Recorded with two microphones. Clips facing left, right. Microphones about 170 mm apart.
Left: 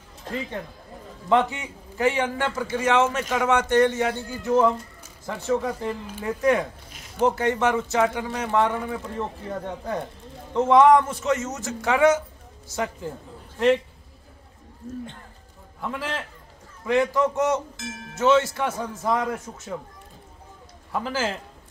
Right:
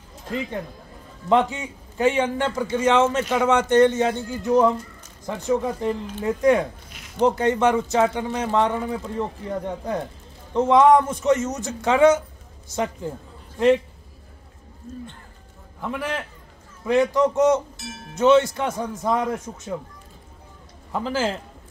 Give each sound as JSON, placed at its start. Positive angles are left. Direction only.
{"t": 1.3, "sound": "a man's voice", "side_deg": -20}
{"t": 15.8, "sound": "a man's voice", "side_deg": -15}
{"t": 20.9, "sound": "speech", "side_deg": -20}